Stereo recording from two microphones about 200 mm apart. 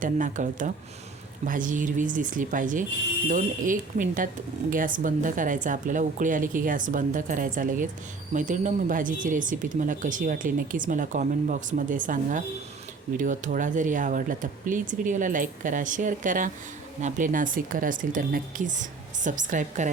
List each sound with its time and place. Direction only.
0.0 s speech: 40° right (ahead or behind)